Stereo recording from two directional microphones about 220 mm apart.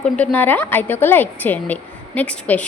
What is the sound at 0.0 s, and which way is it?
A woman's voice, 5° left (ahead or behind).